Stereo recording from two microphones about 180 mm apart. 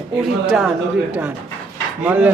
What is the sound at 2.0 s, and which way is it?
Speech, 10° right (ahead or behind).